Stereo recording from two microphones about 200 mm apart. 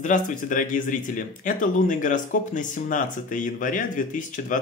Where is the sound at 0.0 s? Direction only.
40° left (ahead or behind).